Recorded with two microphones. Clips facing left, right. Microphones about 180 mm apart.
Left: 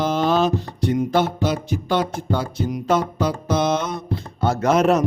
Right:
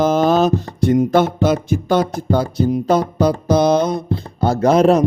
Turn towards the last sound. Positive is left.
turn(degrees=-35)  # may be behind; listen again after turning